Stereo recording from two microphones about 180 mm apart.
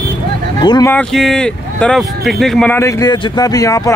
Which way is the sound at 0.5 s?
25° left (ahead or behind).